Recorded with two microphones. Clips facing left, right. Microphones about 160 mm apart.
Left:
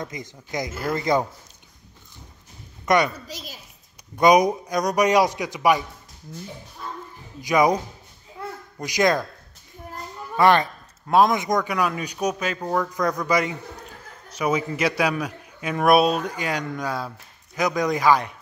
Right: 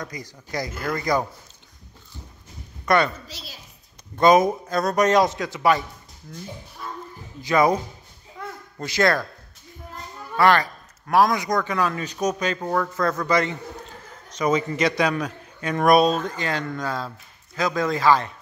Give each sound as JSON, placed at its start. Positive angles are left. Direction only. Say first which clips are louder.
{"t": 0.0, "sound": "speech", "louder": "left 1 dB", "side_deg": 20}
{"t": 2.8, "sound": "a woman's voice", "louder": "even", "side_deg": 20}
{"t": 3.3, "sound": "a woman's voice", "louder": "left 4 dB", "side_deg": 45}
{"t": 4.2, "sound": "a man's voice", "louder": "even", "side_deg": 15}
{"t": 7.4, "sound": "a man's voice", "louder": "even", "side_deg": 15}
{"t": 8.7, "sound": "a man's voice", "louder": "even", "side_deg": 15}
{"t": 10.3, "sound": "a man's voice", "louder": "left 1 dB", "side_deg": 20}